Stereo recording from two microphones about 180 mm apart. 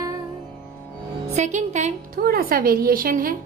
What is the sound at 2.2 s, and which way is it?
A woman's voice, 55° right (ahead or behind).